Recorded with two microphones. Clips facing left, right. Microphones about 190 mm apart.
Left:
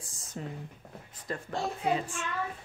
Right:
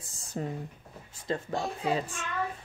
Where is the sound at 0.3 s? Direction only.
40° right (ahead or behind).